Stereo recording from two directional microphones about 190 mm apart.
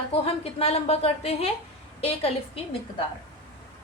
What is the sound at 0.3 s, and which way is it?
A woman's voice, 30° left (ahead or behind).